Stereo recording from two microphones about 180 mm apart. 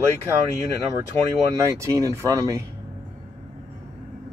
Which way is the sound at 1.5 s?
15° right (ahead or behind).